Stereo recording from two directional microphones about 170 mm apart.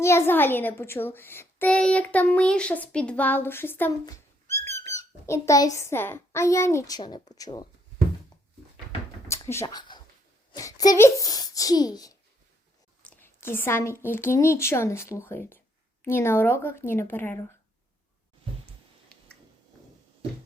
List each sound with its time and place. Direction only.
0.0 s a child's voice: 15° left (ahead or behind)
9.2 s a sound: 15° left (ahead or behind)
9.6 s a child's voice: 25° left (ahead or behind)